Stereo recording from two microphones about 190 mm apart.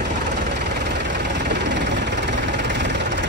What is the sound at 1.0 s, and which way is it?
Vehicle, 65° right (ahead or behind).